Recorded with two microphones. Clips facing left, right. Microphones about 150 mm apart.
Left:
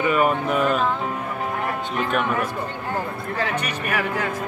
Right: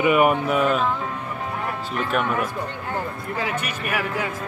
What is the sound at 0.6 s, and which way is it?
Speech, centre (ahead or behind).